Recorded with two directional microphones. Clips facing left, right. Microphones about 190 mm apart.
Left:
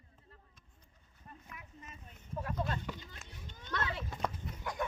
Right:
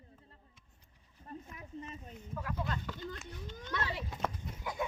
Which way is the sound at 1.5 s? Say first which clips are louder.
Right 5 dB; 30° right (ahead or behind).